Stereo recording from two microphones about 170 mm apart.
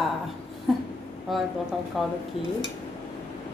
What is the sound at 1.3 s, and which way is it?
Dishes, centre (ahead or behind).